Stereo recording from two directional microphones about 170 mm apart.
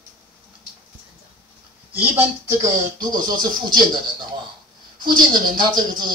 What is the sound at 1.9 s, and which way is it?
Speech, 15° right (ahead or behind).